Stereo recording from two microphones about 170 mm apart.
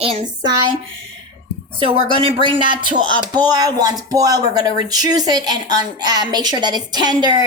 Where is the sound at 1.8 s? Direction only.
30° right (ahead or behind).